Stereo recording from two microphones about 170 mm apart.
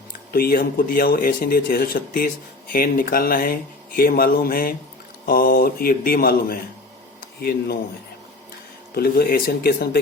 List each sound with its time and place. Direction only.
0.3 s speech: 60° left (ahead or behind)
9.0 s speech: 65° left (ahead or behind)